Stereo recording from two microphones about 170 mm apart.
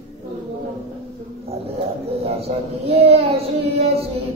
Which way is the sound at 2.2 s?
35° right (ahead or behind).